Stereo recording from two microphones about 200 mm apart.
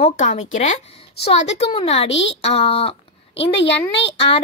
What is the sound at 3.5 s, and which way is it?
Speech, 60° left (ahead or behind).